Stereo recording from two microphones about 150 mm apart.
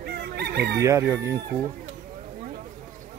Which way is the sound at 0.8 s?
20° right (ahead or behind).